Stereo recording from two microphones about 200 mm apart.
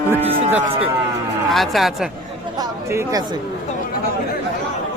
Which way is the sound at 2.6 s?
15° right (ahead or behind).